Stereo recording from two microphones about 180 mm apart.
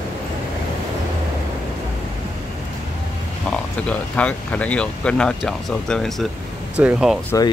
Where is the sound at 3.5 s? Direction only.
5° left (ahead or behind).